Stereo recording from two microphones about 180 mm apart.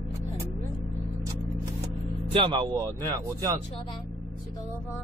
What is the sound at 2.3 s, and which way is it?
Music, 25° right (ahead or behind).